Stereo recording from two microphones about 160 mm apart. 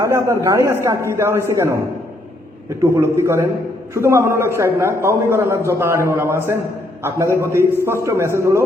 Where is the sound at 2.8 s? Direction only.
15° right (ahead or behind).